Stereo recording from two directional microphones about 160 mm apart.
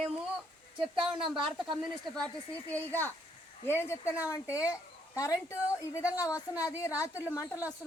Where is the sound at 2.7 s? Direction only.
10° left (ahead or behind).